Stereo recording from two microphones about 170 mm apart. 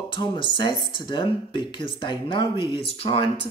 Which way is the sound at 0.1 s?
30° left (ahead or behind).